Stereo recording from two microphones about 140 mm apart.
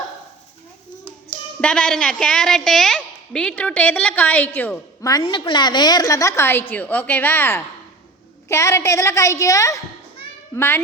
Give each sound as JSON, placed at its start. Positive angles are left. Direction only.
{"t": 1.6, "sound": "a woman's voice", "side_deg": 5}
{"t": 5.2, "sound": "a woman's voice", "side_deg": 35}